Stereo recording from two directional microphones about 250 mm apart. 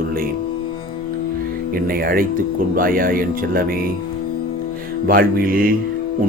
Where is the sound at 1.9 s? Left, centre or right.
Right.